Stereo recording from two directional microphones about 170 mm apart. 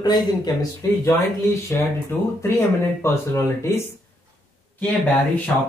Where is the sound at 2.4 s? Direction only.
15° left (ahead or behind).